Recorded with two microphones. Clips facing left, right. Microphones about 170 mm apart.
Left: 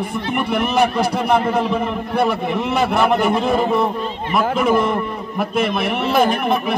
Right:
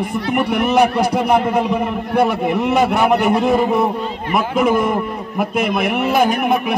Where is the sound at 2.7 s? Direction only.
15° right (ahead or behind).